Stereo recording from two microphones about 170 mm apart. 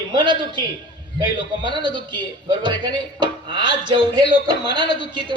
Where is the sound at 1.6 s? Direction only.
25° right (ahead or behind).